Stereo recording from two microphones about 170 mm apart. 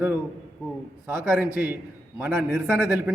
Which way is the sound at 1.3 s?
10° right (ahead or behind).